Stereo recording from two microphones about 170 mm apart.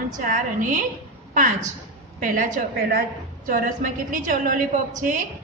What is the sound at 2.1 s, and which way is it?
Mantra, 50° right (ahead or behind).